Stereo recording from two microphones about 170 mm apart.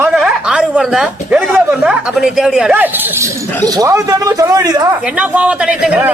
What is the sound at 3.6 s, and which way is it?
Speech, 20° right (ahead or behind).